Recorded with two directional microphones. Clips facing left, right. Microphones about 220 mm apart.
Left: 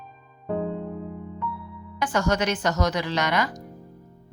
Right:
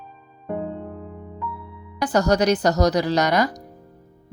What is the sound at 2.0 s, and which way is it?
A woman's voice, 40° right (ahead or behind).